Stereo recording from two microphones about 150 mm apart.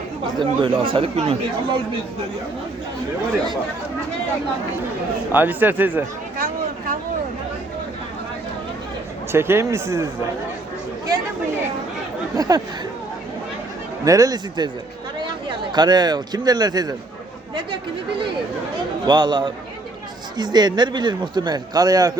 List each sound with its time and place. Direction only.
0.3 s speech: 35° right (ahead or behind)
5.3 s speech: 10° right (ahead or behind)
9.3 s speech: 15° right (ahead or behind)
12.4 s speech: 25° right (ahead or behind)
14.0 s speech: 25° right (ahead or behind)
19.0 s speech: 30° right (ahead or behind)